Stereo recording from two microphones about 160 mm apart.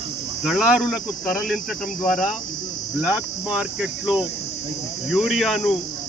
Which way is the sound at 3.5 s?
5° right (ahead or behind).